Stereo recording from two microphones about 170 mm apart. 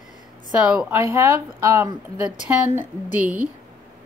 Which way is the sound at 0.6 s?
5° right (ahead or behind).